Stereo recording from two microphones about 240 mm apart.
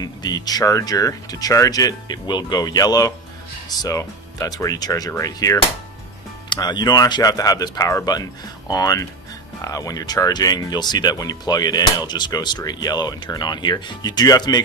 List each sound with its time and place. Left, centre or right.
0.0 s speech: centre